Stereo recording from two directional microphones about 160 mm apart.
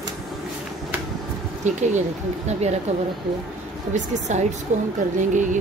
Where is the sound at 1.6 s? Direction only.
50° right (ahead or behind).